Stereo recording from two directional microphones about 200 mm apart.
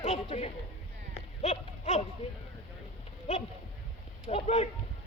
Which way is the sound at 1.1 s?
35° left (ahead or behind).